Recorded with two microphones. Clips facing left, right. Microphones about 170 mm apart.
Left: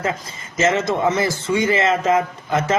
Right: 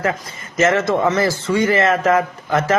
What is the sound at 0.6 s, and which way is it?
A man's voice, 20° left (ahead or behind).